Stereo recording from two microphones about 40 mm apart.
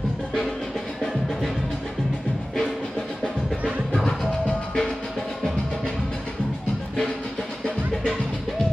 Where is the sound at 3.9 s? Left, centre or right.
Centre.